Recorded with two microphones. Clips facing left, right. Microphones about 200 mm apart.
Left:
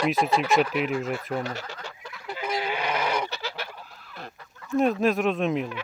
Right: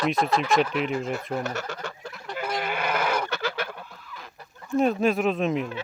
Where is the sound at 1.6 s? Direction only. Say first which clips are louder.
Right 5 dB; 50° right (ahead or behind).